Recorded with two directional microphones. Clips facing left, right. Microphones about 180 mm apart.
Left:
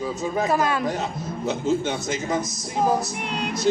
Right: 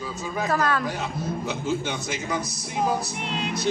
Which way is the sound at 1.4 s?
35° left (ahead or behind).